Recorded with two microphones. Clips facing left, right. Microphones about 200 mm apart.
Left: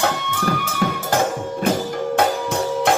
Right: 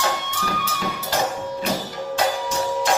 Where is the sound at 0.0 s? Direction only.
55° left (ahead or behind).